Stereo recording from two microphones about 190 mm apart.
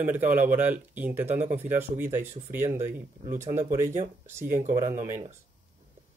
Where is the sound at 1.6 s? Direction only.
10° right (ahead or behind).